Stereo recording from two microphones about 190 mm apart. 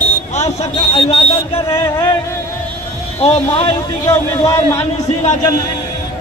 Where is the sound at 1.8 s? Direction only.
20° left (ahead or behind).